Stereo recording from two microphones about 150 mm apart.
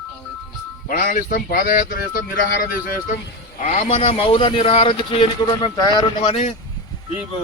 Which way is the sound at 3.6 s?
60° left (ahead or behind).